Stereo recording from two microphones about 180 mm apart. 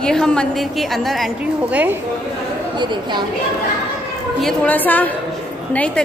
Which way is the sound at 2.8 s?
25° right (ahead or behind).